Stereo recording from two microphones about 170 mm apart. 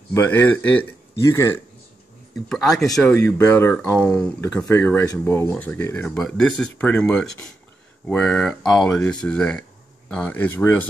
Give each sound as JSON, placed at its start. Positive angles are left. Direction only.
{"t": 0.1, "sound": "speech", "side_deg": 10}
{"t": 2.5, "sound": "speech", "side_deg": 0}